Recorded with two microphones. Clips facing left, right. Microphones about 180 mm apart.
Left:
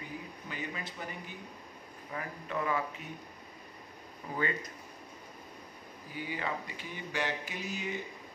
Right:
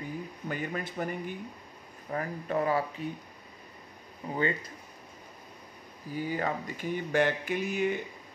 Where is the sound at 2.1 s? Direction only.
40° right (ahead or behind).